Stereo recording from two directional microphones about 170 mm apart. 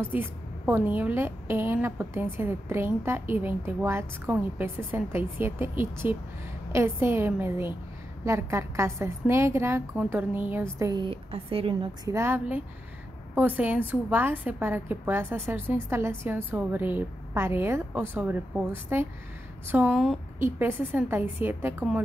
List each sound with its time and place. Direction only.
0.1 s a woman's voice: 15° right (ahead or behind); by 12.1 s 30° right (ahead or behind)
12.1 s a woman's voice: 15° right (ahead or behind)
19.9 s a woman's voice: centre (ahead or behind)
20.3 s a woman's voice: 15° right (ahead or behind)